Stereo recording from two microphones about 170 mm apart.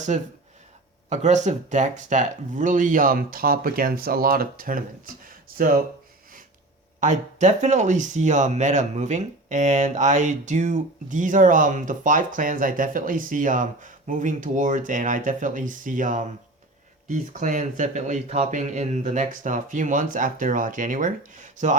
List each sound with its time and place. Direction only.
0.1 s speech: 45° right (ahead or behind)
7.0 s speech: 45° right (ahead or behind)